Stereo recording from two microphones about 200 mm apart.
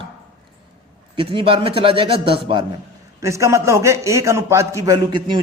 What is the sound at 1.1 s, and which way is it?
A man's voice, 25° right (ahead or behind).